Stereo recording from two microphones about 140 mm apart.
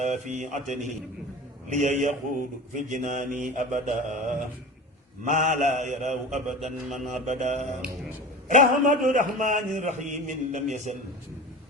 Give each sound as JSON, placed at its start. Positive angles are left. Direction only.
{"t": 0.0, "sound": "a man's voice", "side_deg": -60}
{"t": 6.7, "sound": "a man's voice", "side_deg": 0}
{"t": 7.3, "sound": "a man's voice", "side_deg": -55}